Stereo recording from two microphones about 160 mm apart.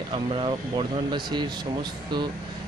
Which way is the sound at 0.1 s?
35° right (ahead or behind).